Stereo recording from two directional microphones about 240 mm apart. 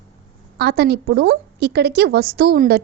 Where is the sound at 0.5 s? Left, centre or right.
Right.